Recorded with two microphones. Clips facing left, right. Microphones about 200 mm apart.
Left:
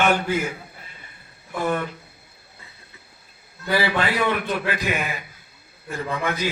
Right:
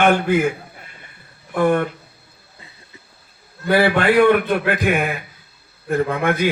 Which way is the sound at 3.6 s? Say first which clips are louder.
Right 7 dB; 55° right (ahead or behind).